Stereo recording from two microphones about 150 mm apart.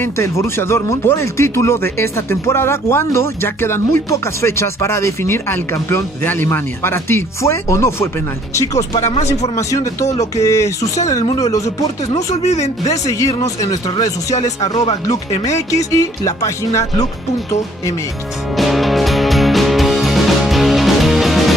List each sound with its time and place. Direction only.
0.0 s speech: 15° left (ahead or behind)
8.9 s speech: 45° left (ahead or behind)
9.6 s speech: 20° left (ahead or behind)
12.4 s speech: 50° left (ahead or behind)
12.9 s speech: 20° left (ahead or behind)
18.6 s music: centre (ahead or behind)